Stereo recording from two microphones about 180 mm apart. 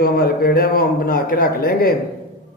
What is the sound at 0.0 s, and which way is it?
A man's voice, 55° left (ahead or behind).